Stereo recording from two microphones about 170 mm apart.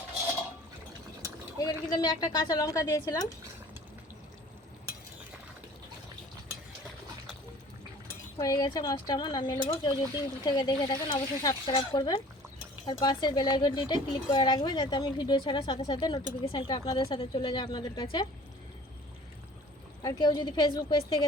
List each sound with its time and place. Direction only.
1.5 s speech: 25° left (ahead or behind)
8.4 s speech: 20° left (ahead or behind)
20.0 s speech: 25° left (ahead or behind)